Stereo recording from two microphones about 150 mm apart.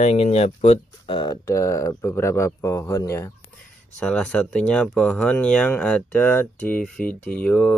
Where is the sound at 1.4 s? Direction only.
20° left (ahead or behind).